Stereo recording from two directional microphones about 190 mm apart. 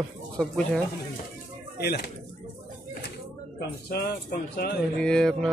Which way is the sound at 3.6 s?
55° left (ahead or behind).